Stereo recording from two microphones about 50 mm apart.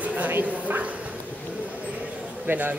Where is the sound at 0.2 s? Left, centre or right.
Right.